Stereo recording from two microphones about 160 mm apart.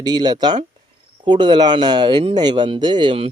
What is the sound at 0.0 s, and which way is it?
Speech, 25° right (ahead or behind).